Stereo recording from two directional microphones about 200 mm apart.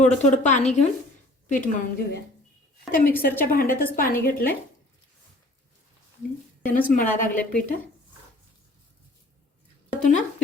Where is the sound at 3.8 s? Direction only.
45° left (ahead or behind).